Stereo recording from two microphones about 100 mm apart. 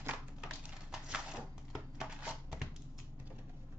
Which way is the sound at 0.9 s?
5° right (ahead or behind).